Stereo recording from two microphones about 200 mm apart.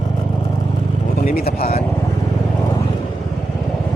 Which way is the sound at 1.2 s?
45° left (ahead or behind).